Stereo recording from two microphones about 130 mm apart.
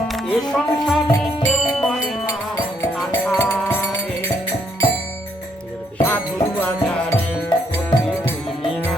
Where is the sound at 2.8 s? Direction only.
15° left (ahead or behind).